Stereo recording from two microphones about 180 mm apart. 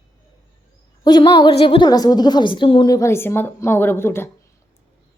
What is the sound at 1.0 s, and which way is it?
A woman's voice, 25° left (ahead or behind).